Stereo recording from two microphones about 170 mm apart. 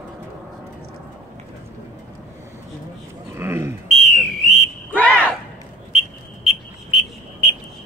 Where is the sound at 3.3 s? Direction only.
15° right (ahead or behind).